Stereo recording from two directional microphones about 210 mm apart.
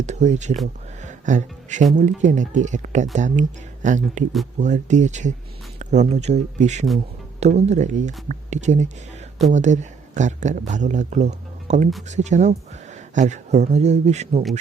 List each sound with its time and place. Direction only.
0.0 s speech: 35° right (ahead or behind)